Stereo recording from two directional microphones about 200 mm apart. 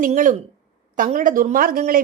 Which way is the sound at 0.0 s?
40° right (ahead or behind).